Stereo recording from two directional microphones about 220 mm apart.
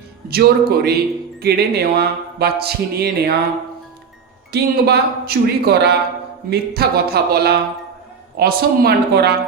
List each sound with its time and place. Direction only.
0.3 s speech: 45° right (ahead or behind)
4.5 s speech: 45° right (ahead or behind)